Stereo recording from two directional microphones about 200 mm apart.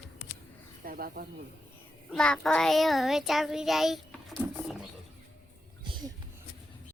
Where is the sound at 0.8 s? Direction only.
45° right (ahead or behind).